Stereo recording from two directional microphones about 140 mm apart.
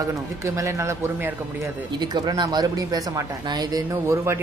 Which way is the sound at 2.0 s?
30° right (ahead or behind).